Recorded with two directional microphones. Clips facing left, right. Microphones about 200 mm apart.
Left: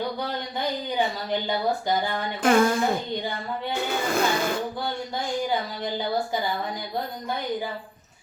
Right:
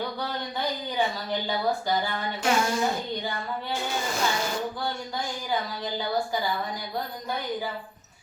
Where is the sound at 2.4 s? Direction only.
55° left (ahead or behind).